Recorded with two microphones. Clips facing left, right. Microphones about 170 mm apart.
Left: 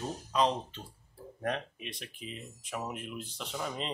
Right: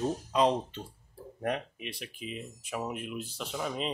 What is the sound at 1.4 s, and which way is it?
Speech, 5° right (ahead or behind).